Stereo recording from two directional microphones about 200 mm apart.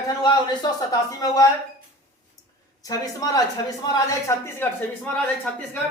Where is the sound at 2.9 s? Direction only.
20° left (ahead or behind).